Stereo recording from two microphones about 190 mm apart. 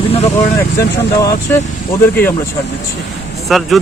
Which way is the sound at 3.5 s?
Centre (ahead or behind).